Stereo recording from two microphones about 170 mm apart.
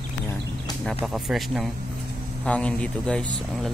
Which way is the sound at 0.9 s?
Centre (ahead or behind).